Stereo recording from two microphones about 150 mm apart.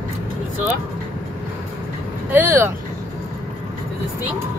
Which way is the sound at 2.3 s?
15° right (ahead or behind).